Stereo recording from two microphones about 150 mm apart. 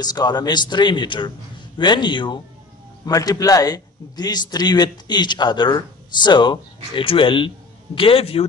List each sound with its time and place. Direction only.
0.0 s a man's voice: 25° left (ahead or behind)